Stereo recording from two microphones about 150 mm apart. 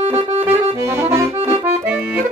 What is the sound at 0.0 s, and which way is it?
Accordion, 40° right (ahead or behind).